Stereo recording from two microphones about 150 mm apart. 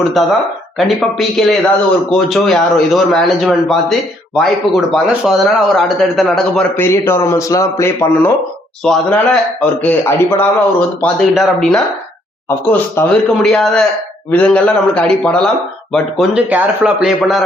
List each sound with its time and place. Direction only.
0.2 s speech: centre (ahead or behind)
6.7 s a man's voice: 15° left (ahead or behind)
8.8 s a man's voice: 5° left (ahead or behind)
11.3 s speech: centre (ahead or behind)
12.5 s a man's voice: 15° left (ahead or behind)